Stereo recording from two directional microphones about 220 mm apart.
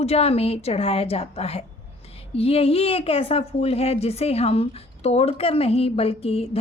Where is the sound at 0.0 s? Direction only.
25° left (ahead or behind).